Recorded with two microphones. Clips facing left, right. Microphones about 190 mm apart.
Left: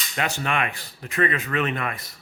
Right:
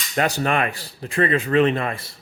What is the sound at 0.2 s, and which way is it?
Speech, 40° right (ahead or behind).